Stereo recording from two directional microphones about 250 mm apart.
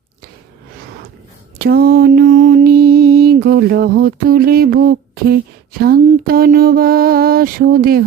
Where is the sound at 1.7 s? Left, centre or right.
Right.